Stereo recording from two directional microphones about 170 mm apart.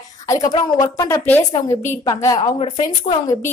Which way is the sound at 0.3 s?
20° left (ahead or behind).